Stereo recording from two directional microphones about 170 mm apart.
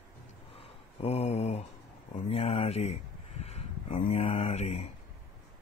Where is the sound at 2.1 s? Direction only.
35° left (ahead or behind).